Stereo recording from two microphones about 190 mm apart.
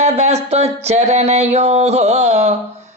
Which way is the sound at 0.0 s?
35° right (ahead or behind).